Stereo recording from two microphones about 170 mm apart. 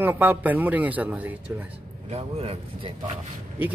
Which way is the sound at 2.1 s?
35° right (ahead or behind).